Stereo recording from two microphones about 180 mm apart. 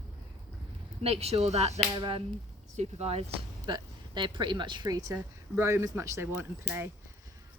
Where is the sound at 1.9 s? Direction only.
25° right (ahead or behind).